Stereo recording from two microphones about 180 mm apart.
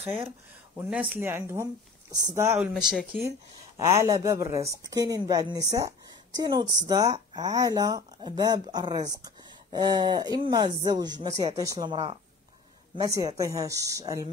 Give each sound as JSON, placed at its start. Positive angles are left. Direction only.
{"t": 0.7, "sound": "speech", "side_deg": -5}
{"t": 2.7, "sound": "speech", "side_deg": -5}
{"t": 3.3, "sound": "a woman's voice", "side_deg": -15}